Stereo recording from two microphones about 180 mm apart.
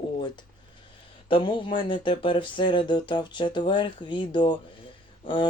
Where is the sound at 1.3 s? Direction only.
25° left (ahead or behind).